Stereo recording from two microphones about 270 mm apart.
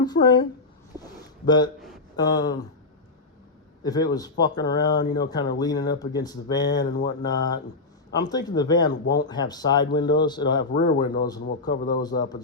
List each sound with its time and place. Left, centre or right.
0.0 s speech: centre
1.5 s speech: centre
3.8 s speech: centre
10.6 s speech: left
11.2 s speech: centre